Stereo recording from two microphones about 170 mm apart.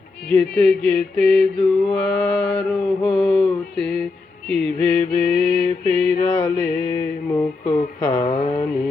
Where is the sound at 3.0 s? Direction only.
5° left (ahead or behind).